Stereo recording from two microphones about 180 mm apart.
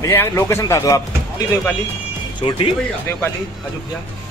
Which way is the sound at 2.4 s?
35° left (ahead or behind).